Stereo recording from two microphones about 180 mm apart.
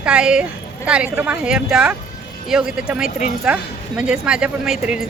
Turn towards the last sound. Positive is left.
turn(degrees=-5)  # may be behind; listen again after turning